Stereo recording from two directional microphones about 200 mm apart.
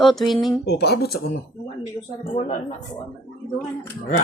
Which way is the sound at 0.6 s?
55° left (ahead or behind).